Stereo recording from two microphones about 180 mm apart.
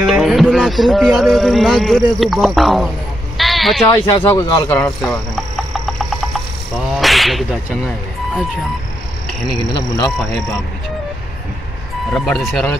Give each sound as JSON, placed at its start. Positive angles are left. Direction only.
{"t": 0.0, "sound": "music", "side_deg": 0}
{"t": 3.3, "sound": "bleat", "side_deg": 0}
{"t": 3.9, "sound": "speech", "side_deg": 15}
{"t": 5.0, "sound": "speech", "side_deg": 5}
{"t": 5.9, "sound": "insect", "side_deg": 0}
{"t": 12.1, "sound": "speech", "side_deg": 0}